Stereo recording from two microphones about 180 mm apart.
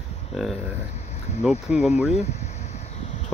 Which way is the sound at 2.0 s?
35° left (ahead or behind).